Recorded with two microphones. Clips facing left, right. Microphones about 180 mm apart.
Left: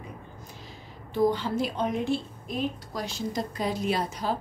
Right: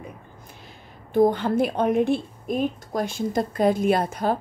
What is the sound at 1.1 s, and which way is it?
A woman's voice, 55° right (ahead or behind).